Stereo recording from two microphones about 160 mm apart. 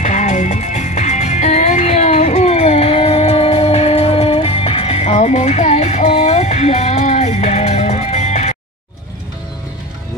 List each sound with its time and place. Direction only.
0.0 s music: 45° left (ahead or behind)